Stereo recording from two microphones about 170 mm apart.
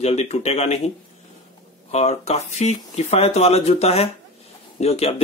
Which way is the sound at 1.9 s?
40° left (ahead or behind).